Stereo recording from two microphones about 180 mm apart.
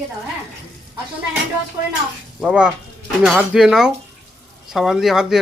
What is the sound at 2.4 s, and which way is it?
Speech, 5° right (ahead or behind).